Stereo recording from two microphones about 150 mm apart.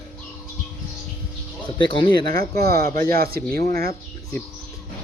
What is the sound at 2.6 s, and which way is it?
Speech, 90° right.